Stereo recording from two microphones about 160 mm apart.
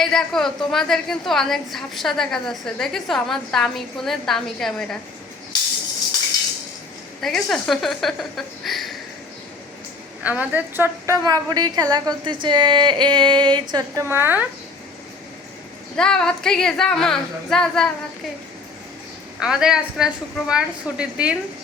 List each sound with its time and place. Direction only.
0.0 s a woman's voice: 5° left (ahead or behind)
7.2 s a woman's voice: centre (ahead or behind)
10.2 s a woman's voice: 10° right (ahead or behind)
16.0 s a woman's voice: 5° left (ahead or behind)
19.4 s a woman's voice: 5° right (ahead or behind)